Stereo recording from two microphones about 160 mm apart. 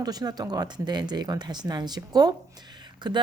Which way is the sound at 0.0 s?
25° right (ahead or behind).